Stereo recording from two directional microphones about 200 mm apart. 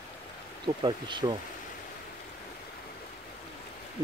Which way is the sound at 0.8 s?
25° right (ahead or behind).